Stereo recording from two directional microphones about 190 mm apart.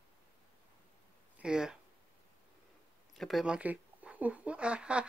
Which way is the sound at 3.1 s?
Centre (ahead or behind).